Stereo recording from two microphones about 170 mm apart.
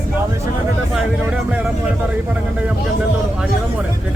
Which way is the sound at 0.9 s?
5° right (ahead or behind).